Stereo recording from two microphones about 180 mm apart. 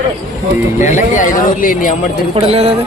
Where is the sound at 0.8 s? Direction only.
45° left (ahead or behind).